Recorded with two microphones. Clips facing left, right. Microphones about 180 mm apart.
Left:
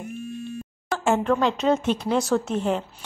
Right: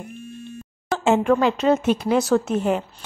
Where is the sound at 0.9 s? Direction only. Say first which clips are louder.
Right 3 dB; 20° right (ahead or behind).